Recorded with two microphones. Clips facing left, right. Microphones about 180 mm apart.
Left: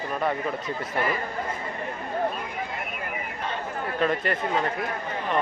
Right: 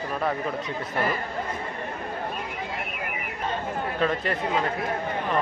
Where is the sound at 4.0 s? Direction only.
Centre (ahead or behind).